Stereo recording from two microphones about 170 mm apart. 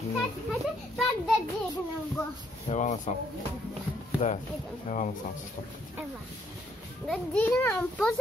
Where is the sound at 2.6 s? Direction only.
45° left (ahead or behind).